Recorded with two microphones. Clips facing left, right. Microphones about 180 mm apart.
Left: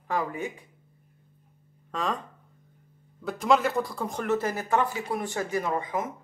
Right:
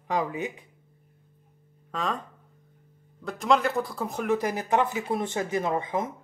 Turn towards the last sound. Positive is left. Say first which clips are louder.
# right 2 dB
turn(degrees=-25)  # may be behind; listen again after turning